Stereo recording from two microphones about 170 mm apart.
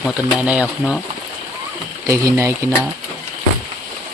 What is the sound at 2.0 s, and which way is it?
Speech, 15° right (ahead or behind).